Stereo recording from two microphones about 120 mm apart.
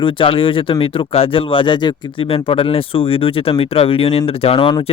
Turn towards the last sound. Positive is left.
turn(degrees=45)  # may be behind; listen again after turning